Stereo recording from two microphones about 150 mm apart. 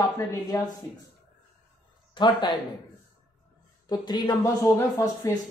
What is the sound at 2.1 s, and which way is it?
Speech, 30° left (ahead or behind).